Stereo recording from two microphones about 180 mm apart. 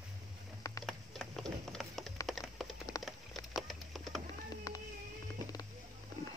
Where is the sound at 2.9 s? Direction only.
20° left (ahead or behind).